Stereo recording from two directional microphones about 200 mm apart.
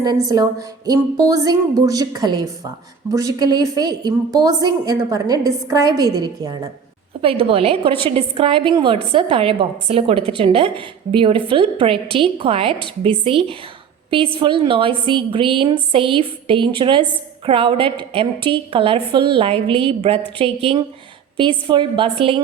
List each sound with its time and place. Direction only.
0.0 s a woman's voice: 20° right (ahead or behind)